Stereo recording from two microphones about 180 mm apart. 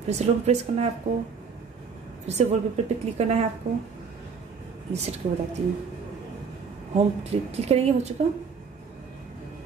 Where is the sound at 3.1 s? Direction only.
35° right (ahead or behind).